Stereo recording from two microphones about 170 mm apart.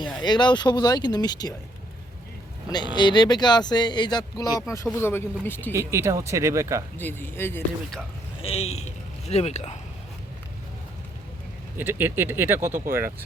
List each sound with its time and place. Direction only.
0.2 s speech: 25° left (ahead or behind)
2.6 s speech: 25° left (ahead or behind)
4.9 s speech: 15° left (ahead or behind)
5.7 s speech: 15° right (ahead or behind)
7.0 s speech: 10° left (ahead or behind)
8.4 s a man's voice: 35° left (ahead or behind)
11.8 s speech: 10° right (ahead or behind)